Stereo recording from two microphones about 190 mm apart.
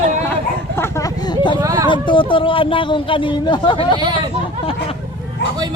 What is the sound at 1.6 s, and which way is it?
Speech, 20° right (ahead or behind).